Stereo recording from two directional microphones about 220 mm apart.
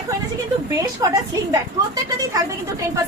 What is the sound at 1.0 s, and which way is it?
Speech, 15° right (ahead or behind).